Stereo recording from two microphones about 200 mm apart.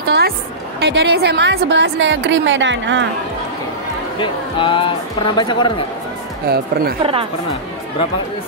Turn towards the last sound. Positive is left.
turn(degrees=-25)  # may be behind; listen again after turning